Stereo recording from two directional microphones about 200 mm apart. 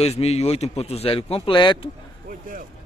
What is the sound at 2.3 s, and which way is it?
Speech, 45° right (ahead or behind).